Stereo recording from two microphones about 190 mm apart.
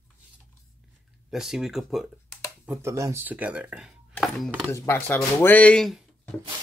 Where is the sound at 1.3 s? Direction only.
Centre (ahead or behind).